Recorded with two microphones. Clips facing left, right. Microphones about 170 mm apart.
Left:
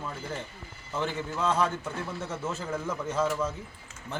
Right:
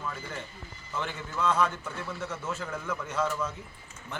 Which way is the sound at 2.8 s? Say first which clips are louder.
Left 2 dB; 25° left (ahead or behind).